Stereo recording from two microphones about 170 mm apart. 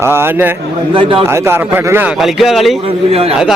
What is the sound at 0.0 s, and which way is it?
A man's voice, 15° right (ahead or behind).